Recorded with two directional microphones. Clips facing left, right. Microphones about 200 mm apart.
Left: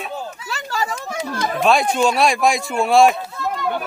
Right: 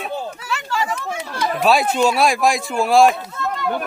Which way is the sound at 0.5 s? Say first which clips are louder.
Right 1 dB; 40° left (ahead or behind).